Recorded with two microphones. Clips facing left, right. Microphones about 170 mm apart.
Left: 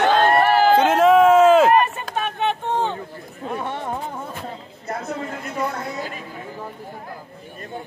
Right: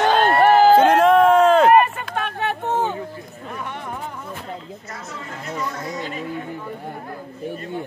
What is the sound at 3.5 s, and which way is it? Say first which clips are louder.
Chatter: left 4 dB; 30° left (ahead or behind).